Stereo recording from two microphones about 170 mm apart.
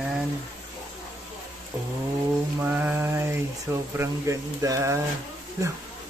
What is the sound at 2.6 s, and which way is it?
Mantra, 10° right (ahead or behind).